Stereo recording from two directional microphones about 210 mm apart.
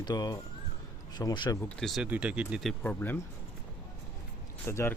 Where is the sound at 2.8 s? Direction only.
10° left (ahead or behind).